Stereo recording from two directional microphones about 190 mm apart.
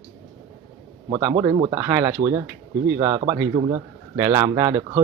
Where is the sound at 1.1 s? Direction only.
15° right (ahead or behind).